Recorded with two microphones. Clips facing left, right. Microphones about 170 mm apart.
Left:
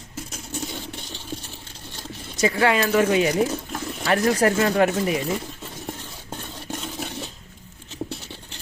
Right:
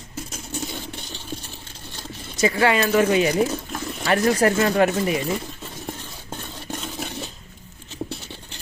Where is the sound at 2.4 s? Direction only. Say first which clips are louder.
Right 1 dB; 5° right (ahead or behind).